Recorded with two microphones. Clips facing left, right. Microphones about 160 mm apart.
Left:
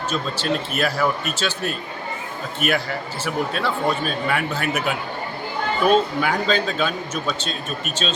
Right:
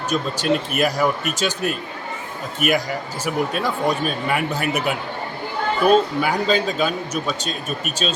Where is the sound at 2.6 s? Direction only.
10° right (ahead or behind).